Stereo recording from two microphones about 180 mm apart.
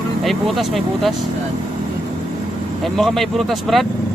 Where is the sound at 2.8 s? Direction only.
Centre (ahead or behind).